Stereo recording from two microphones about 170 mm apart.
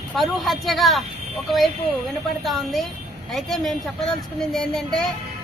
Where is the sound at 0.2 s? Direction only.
Centre (ahead or behind).